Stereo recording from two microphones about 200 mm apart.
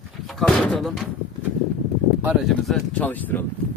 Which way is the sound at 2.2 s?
5° right (ahead or behind).